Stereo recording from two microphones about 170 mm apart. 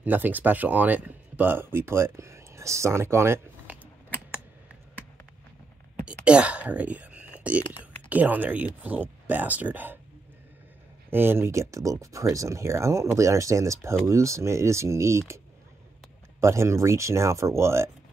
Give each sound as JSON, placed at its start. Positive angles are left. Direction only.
{"t": 0.0, "sound": "speech", "side_deg": -10}
{"t": 6.0, "sound": "whispering", "side_deg": -5}
{"t": 8.1, "sound": "speech", "side_deg": -10}
{"t": 11.1, "sound": "speech", "side_deg": -15}